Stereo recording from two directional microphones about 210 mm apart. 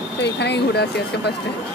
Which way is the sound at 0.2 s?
55° left (ahead or behind).